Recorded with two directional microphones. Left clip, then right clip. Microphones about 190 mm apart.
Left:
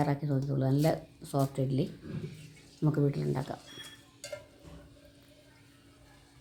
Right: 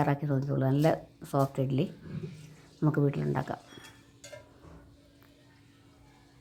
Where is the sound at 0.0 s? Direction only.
20° right (ahead or behind).